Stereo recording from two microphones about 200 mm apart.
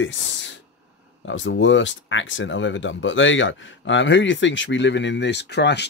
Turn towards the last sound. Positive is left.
turn(degrees=60)  # may be behind; listen again after turning